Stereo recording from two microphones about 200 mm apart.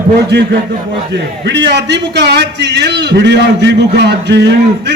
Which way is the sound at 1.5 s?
60° right (ahead or behind).